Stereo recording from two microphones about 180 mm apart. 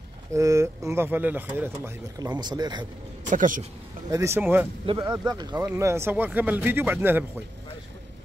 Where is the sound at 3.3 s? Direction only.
45° right (ahead or behind).